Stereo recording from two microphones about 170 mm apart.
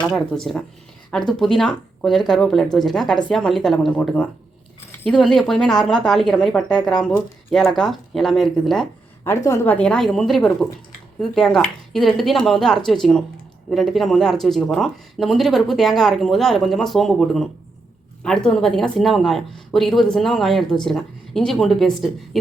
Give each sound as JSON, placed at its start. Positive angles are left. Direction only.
{"t": 0.0, "sound": "speech", "side_deg": 5}
{"t": 9.2, "sound": "a woman's voice", "side_deg": 15}
{"t": 9.7, "sound": "speech", "side_deg": 5}